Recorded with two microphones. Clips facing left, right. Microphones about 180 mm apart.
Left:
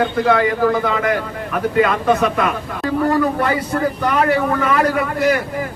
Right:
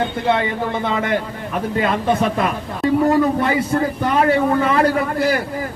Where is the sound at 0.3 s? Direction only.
25° right (ahead or behind).